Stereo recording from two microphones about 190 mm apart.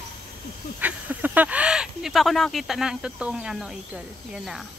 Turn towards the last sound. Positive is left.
turn(degrees=0)  # may be behind; listen again after turning